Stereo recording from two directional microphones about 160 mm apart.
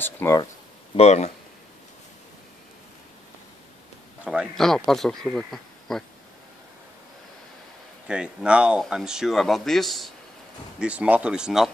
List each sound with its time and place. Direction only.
0.0 s a sound: 15° left (ahead or behind)
0.9 s speech: 45° left (ahead or behind)
4.2 s speech: 5° right (ahead or behind)
8.1 s speech: 5° right (ahead or behind)